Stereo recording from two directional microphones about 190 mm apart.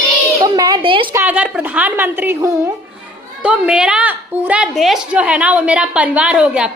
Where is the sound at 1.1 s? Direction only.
10° right (ahead or behind).